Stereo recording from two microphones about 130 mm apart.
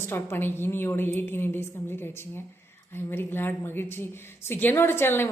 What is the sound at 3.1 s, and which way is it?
A woman's voice, 15° left (ahead or behind).